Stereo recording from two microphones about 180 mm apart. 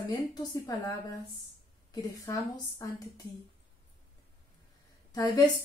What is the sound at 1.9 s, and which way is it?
A woman's voice, 20° left (ahead or behind).